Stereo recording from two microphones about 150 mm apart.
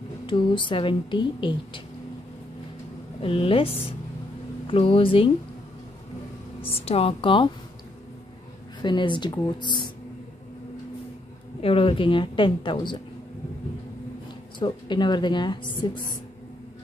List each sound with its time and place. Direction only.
0.3 s a woman's voice: 35° left (ahead or behind)
3.2 s a woman's voice: 40° left (ahead or behind)
6.8 s a woman's voice: 40° left (ahead or behind)
8.8 s a woman's voice: 30° left (ahead or behind)
11.6 s a woman's voice: 40° left (ahead or behind)
14.6 s a woman's voice: 30° left (ahead or behind)